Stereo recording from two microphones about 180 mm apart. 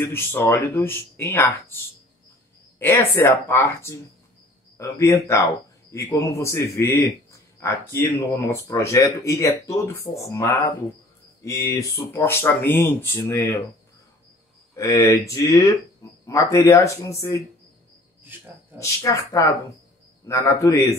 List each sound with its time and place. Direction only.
0.0 s speech: 15° left (ahead or behind)
2.8 s speech: 15° left (ahead or behind)
14.8 s speech: 20° left (ahead or behind)
18.2 s cricket: 10° right (ahead or behind)
18.8 s speech: 15° left (ahead or behind)